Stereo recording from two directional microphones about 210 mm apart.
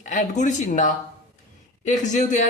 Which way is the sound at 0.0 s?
35° left (ahead or behind).